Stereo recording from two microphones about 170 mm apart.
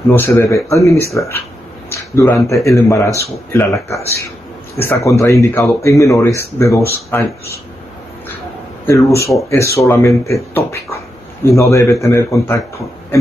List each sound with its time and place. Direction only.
0.1 s speech: 15° left (ahead or behind)
8.8 s speech: 15° left (ahead or behind)